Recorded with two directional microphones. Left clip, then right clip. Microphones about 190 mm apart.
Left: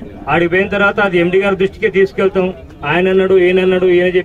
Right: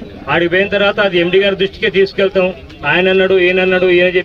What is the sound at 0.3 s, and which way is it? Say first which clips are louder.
A man's voice: right 1 dB; 25° left (ahead or behind).